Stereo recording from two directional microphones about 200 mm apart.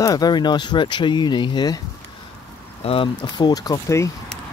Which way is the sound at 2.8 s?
25° left (ahead or behind).